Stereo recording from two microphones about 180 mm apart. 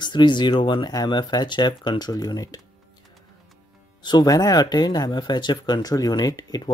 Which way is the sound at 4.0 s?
25° left (ahead or behind).